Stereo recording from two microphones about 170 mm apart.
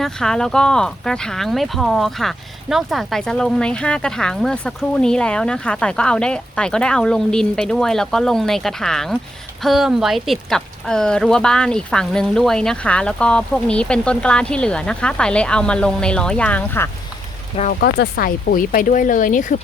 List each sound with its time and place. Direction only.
0.0 s speech: 5° left (ahead or behind)
17.7 s speech: 65° left (ahead or behind); by 19.5 s 50° left (ahead or behind)